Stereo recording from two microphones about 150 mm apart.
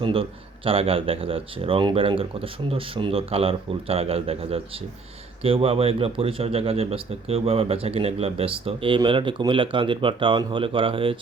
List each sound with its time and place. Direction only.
0.0 s speech: 35° right (ahead or behind)